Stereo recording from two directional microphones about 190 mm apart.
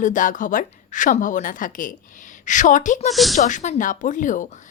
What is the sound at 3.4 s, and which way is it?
A woman's voice, 40° left (ahead or behind).